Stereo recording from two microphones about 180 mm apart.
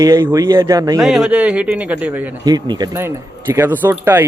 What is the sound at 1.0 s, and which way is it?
Speech, centre (ahead or behind).